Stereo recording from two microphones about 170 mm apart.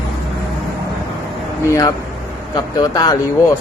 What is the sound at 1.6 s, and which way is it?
Speech, 20° left (ahead or behind).